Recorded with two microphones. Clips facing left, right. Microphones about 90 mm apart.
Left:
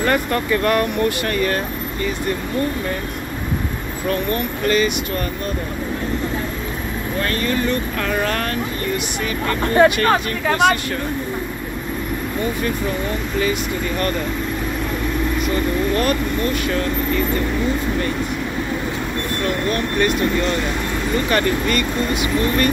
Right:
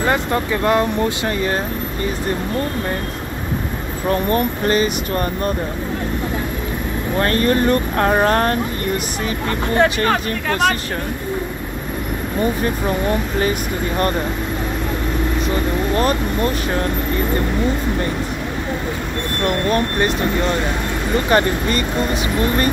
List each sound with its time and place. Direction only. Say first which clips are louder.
0.0 s speech: right 1 dB; 20° right (ahead or behind)
4.1 s speech: right 4 dB; 30° right (ahead or behind)
7.2 s speech: right 5 dB; 40° right (ahead or behind)
10.0 s speech: left 1 dB; 5° left (ahead or behind)
13.4 s speech: right 1 dB; 35° right (ahead or behind)
15.9 s speech: right 1 dB; 30° right (ahead or behind)
19.4 s speech: right 4 dB; 25° right (ahead or behind)